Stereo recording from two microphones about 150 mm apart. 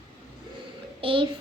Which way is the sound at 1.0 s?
35° right (ahead or behind).